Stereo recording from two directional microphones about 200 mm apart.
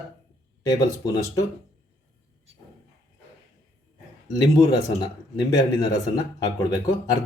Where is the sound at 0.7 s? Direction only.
15° left (ahead or behind).